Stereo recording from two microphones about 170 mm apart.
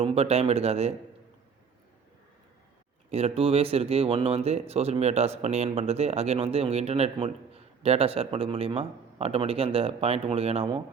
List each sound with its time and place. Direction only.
0.0 s speech: 35° right (ahead or behind)
3.1 s speech: 40° right (ahead or behind)